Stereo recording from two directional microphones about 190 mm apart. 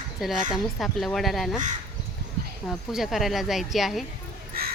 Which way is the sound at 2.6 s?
Centre (ahead or behind).